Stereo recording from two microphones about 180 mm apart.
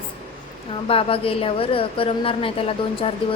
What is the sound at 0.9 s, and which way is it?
A woman's voice, 30° left (ahead or behind).